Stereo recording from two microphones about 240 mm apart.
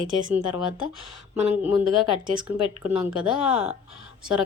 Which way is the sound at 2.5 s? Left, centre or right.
Left.